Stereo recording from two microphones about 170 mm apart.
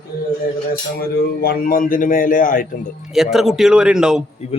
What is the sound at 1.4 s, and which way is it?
A man's voice, 60° left (ahead or behind).